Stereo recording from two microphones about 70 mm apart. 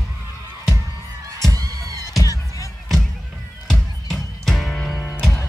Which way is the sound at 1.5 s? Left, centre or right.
Right.